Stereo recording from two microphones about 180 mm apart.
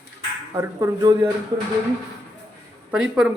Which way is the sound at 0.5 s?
20° right (ahead or behind).